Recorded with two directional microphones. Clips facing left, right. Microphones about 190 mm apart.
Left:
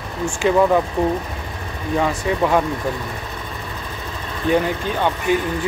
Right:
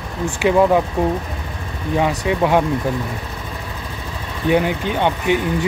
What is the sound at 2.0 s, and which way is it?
Speech, 10° right (ahead or behind).